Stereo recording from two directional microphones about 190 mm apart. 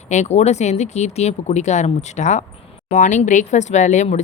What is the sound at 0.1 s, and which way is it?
Speech, 35° left (ahead or behind).